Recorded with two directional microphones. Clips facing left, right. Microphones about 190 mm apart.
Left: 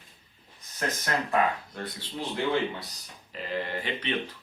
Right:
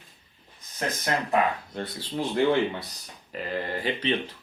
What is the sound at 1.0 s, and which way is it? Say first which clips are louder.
Speech: right 2 dB; 25° right (ahead or behind).